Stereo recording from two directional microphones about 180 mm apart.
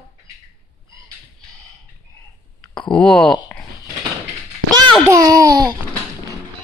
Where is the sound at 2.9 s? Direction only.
5° left (ahead or behind).